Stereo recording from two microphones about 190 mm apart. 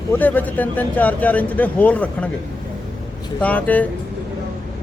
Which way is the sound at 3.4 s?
10° left (ahead or behind).